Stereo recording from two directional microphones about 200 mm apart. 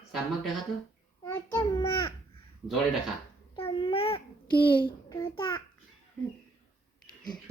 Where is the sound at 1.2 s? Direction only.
10° left (ahead or behind).